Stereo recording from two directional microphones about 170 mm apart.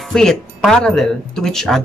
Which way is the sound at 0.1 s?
5° left (ahead or behind).